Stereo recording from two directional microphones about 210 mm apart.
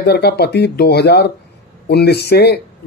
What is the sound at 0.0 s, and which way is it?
Speech, 50° left (ahead or behind).